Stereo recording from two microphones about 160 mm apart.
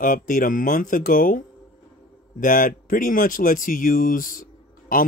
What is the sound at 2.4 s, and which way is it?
Speech, 60° left (ahead or behind).